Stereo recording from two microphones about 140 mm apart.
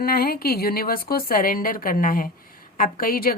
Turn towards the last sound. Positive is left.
turn(degrees=90)